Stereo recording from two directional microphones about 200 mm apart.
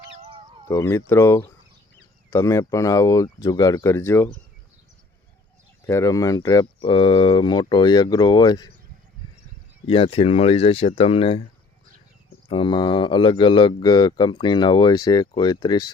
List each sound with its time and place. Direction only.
0.2 s a sound: 25° right (ahead or behind)
0.7 s speech: 15° left (ahead or behind)
5.8 s speech: 15° left (ahead or behind)
9.8 s speech: 25° left (ahead or behind)
12.5 s speech: 25° left (ahead or behind)